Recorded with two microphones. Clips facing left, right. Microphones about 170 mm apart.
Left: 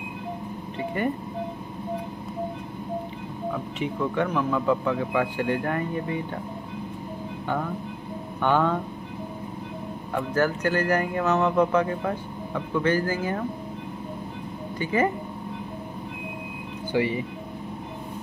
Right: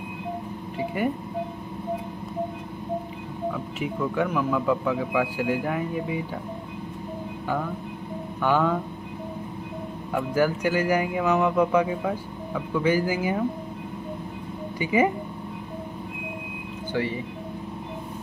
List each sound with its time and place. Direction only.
0.7 s speech: 5° right (ahead or behind)
3.8 s speech: 5° right (ahead or behind)
8.4 s speech: 5° right (ahead or behind)
10.1 s speech: 10° right (ahead or behind)
14.8 s speech: 10° right (ahead or behind)
16.9 s speech: 15° left (ahead or behind)